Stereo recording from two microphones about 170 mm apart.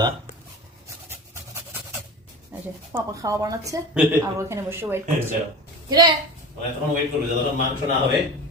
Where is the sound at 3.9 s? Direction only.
5° right (ahead or behind); by 6.1 s 20° right (ahead or behind).